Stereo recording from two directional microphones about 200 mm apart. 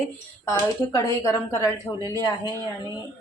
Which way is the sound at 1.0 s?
15° left (ahead or behind).